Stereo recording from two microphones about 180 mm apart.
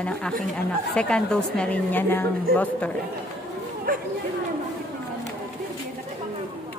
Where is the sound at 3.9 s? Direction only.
50° right (ahead or behind).